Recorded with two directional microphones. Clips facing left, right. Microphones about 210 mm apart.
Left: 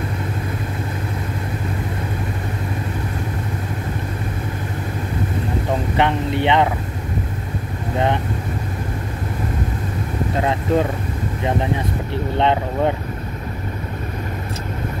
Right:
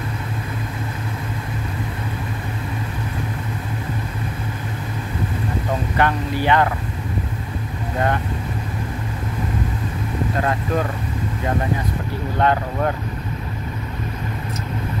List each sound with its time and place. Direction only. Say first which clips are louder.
5.9 s speech: left 1 dB; 25° left (ahead or behind)
10.4 s speech: left 5 dB; 25° left (ahead or behind)
12.4 s speech: left 1 dB; 25° left (ahead or behind)